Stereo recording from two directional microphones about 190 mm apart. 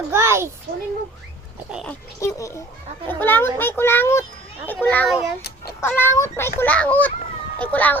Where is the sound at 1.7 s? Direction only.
5° right (ahead or behind).